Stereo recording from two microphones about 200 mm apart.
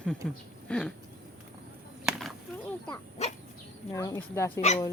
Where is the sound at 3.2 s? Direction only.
35° left (ahead or behind).